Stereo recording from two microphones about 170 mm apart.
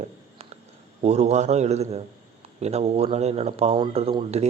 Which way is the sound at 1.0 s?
40° right (ahead or behind).